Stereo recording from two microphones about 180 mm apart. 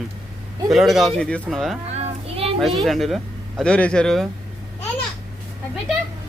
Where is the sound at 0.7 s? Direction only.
Centre (ahead or behind).